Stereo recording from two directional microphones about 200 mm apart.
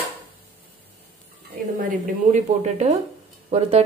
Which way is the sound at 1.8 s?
35° right (ahead or behind).